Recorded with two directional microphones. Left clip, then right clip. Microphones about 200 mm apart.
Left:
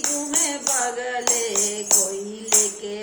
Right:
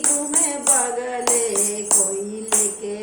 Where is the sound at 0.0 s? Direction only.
10° left (ahead or behind).